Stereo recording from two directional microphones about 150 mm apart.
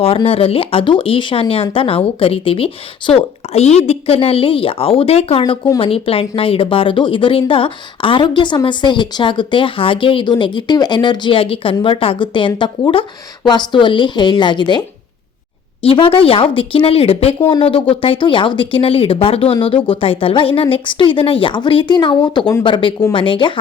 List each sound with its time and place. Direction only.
0.0 s a woman's voice: 40° left (ahead or behind)